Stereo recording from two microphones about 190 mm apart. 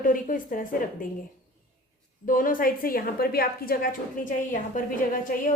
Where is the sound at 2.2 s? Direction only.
45° left (ahead or behind).